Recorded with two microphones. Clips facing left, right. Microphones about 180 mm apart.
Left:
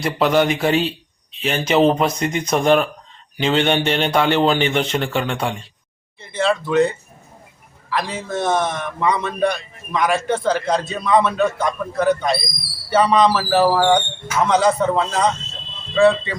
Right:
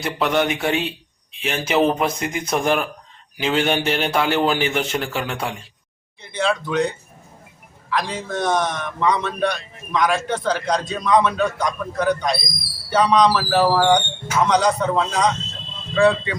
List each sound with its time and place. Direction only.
0.0 s a man's voice: centre (ahead or behind)
1.7 s speech: 25° left (ahead or behind)
2.0 s a man's voice: 5° right (ahead or behind)